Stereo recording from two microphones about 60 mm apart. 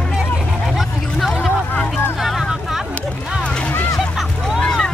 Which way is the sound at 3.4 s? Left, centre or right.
Centre.